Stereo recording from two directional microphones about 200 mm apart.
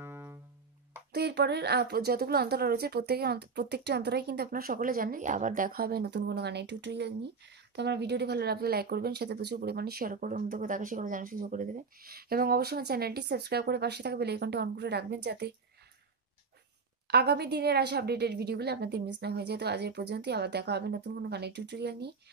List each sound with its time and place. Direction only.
0.0 s music: 10° right (ahead or behind)
1.1 s speech: 55° right (ahead or behind)
17.1 s a woman's voice: 55° right (ahead or behind)